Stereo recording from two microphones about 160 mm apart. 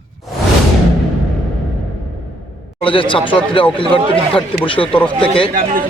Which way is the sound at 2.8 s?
35° left (ahead or behind).